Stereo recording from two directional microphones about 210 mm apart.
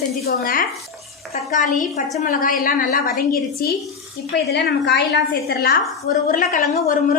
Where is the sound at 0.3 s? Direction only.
45° left (ahead or behind).